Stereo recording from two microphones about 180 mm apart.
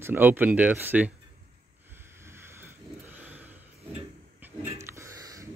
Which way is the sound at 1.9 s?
15° right (ahead or behind).